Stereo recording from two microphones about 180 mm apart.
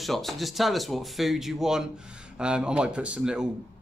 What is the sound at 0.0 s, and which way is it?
Speech, centre (ahead or behind).